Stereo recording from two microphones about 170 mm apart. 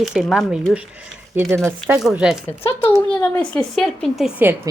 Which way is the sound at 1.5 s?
Centre (ahead or behind).